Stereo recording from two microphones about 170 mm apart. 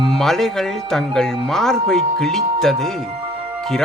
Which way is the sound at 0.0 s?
Centre (ahead or behind).